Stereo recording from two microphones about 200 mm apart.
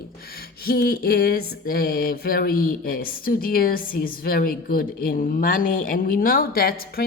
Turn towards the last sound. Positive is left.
turn(degrees=50)  # may be behind; listen again after turning